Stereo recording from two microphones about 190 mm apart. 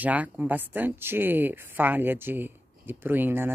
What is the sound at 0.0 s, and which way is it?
Speech, 10° right (ahead or behind).